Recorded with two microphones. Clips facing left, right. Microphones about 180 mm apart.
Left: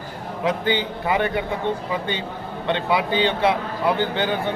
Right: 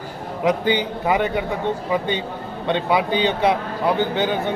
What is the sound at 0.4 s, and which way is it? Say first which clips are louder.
Speech: right 3 dB; 15° right (ahead or behind).